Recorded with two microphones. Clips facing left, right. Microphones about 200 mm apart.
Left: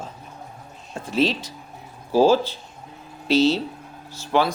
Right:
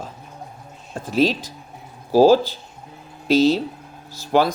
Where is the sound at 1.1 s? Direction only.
40° right (ahead or behind).